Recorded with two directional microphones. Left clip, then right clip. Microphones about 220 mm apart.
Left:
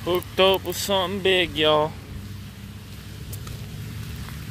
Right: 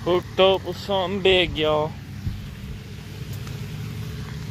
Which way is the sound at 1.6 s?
35° left (ahead or behind).